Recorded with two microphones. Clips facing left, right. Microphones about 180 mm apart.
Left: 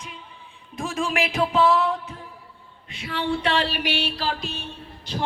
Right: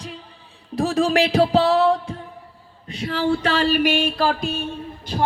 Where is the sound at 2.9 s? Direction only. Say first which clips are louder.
Right 5 dB; 40° right (ahead or behind).